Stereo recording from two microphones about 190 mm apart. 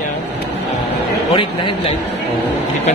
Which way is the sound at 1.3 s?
25° left (ahead or behind).